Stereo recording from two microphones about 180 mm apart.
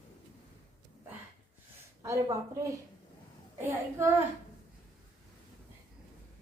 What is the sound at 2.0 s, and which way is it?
A woman's voice, 15° right (ahead or behind).